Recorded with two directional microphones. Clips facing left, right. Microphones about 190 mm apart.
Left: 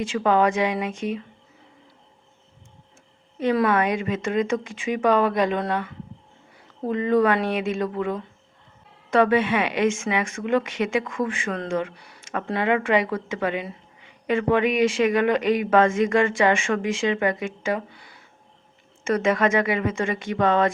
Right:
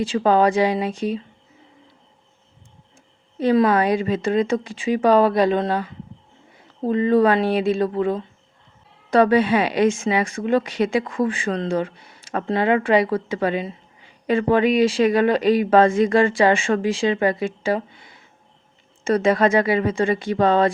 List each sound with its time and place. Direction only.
0.0 s a woman's voice: 35° right (ahead or behind)
3.3 s a woman's voice: 30° right (ahead or behind)
19.0 s a woman's voice: 35° right (ahead or behind)